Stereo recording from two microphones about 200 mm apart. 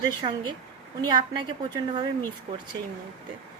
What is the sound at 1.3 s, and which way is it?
Speech, 20° right (ahead or behind).